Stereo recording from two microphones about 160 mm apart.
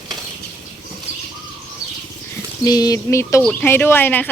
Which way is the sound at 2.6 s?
25° left (ahead or behind).